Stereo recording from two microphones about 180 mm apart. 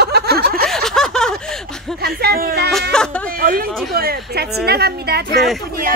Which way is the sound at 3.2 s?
50° right (ahead or behind).